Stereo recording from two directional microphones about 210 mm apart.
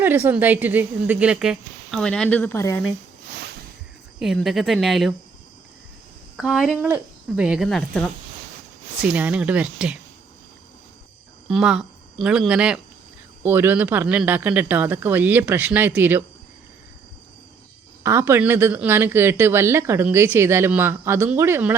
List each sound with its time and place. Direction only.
0.0 s speech: 10° right (ahead or behind); by 2.8 s 10° left (ahead or behind)
3.3 s a sound: 55° right (ahead or behind)
4.2 s speech: centre (ahead or behind)
6.3 s speech: centre (ahead or behind)
11.4 s a woman's voice: centre (ahead or behind)
18.0 s a woman's voice: 10° right (ahead or behind)